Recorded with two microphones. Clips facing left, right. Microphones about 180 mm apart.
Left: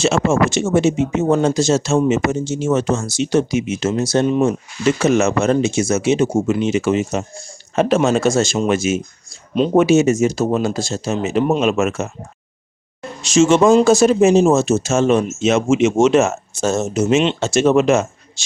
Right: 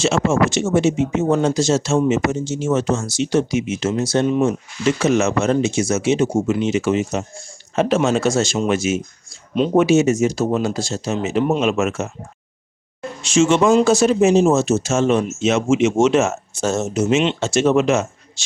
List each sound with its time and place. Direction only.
0.0 s speech: 55° left (ahead or behind)
13.2 s speech: 40° left (ahead or behind)
13.6 s speech: 30° left (ahead or behind)
13.8 s speech: 45° left (ahead or behind)